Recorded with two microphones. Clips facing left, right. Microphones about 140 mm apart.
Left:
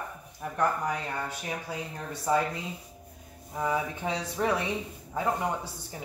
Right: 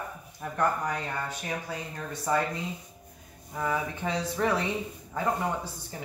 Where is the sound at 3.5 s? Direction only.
15° left (ahead or behind).